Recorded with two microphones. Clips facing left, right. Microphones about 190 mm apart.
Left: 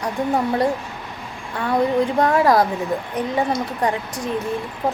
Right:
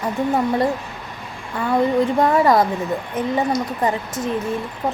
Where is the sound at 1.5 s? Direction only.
Centre (ahead or behind).